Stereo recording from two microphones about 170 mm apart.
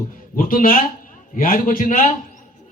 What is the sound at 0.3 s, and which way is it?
A man's voice, 55° left (ahead or behind).